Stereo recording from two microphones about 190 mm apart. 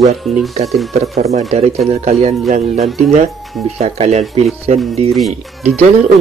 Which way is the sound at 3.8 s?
35° right (ahead or behind).